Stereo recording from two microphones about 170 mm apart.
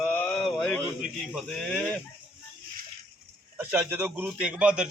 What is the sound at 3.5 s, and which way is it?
A man's voice, 10° right (ahead or behind).